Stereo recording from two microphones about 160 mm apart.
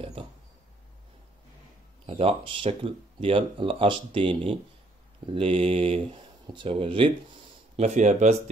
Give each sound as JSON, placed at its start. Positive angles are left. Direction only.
{"t": 2.0, "sound": "speech", "side_deg": -35}
{"t": 7.7, "sound": "speech", "side_deg": -45}